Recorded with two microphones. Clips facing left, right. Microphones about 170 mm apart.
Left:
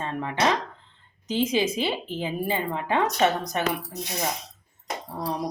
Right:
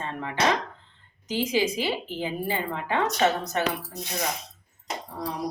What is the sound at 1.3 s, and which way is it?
Speech, 20° left (ahead or behind).